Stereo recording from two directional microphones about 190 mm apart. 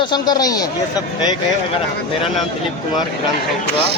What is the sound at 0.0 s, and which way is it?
A man's voice, 20° left (ahead or behind).